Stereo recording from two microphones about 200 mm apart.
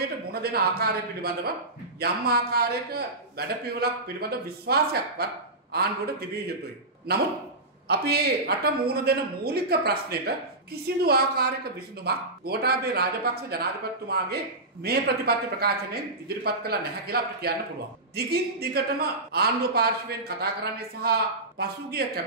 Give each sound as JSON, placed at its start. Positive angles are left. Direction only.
{"t": 0.3, "sound": "a man's voice", "side_deg": -50}
{"t": 7.9, "sound": "a man's voice", "side_deg": -55}